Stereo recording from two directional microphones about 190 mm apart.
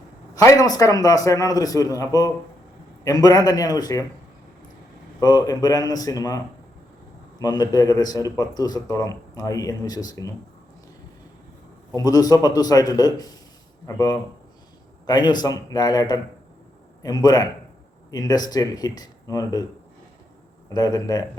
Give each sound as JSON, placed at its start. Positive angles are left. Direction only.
{"t": 0.3, "sound": "speech", "side_deg": 20}
{"t": 5.2, "sound": "speech", "side_deg": 20}
{"t": 11.9, "sound": "speech", "side_deg": 20}
{"t": 20.7, "sound": "speech", "side_deg": 20}